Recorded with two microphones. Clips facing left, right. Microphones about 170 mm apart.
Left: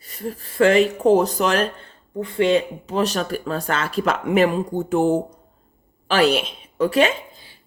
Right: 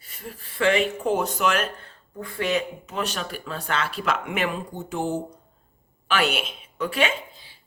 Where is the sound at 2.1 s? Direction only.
25° left (ahead or behind); by 5.2 s 55° left (ahead or behind).